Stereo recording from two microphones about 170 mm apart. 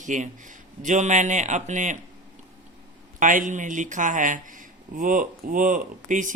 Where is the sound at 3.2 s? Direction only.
50° right (ahead or behind).